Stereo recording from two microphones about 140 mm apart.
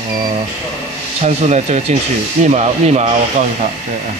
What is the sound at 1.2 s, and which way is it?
Speech, 55° right (ahead or behind).